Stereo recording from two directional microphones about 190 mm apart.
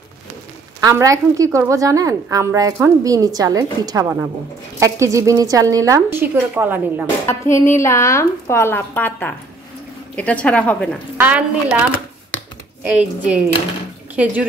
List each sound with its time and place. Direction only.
0.7 s a woman's voice: 15° right (ahead or behind)
7.2 s a woman's voice: 15° left (ahead or behind)
11.1 s a woman's voice: 10° right (ahead or behind)
12.8 s a woman's voice: 5° right (ahead or behind)